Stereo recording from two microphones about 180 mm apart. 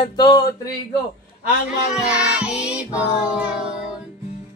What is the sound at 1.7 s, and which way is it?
Music, 5° right (ahead or behind).